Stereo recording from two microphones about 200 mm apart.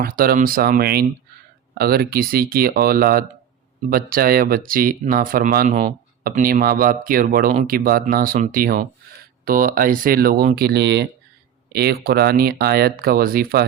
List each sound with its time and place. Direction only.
0.0 s speech: 45° right (ahead or behind)